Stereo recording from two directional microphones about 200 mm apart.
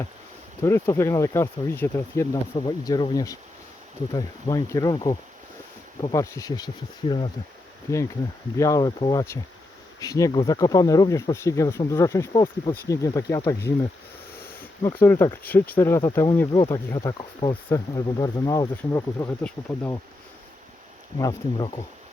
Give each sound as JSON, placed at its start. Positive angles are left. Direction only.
{"t": 0.6, "sound": "speech", "side_deg": 15}
{"t": 7.9, "sound": "speech", "side_deg": 15}
{"t": 15.0, "sound": "speech", "side_deg": 10}
{"t": 21.2, "sound": "speech", "side_deg": 15}